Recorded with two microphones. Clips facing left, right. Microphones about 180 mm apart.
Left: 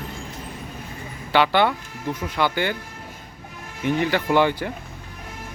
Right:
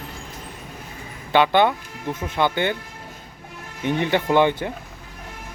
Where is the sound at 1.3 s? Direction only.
20° right (ahead or behind).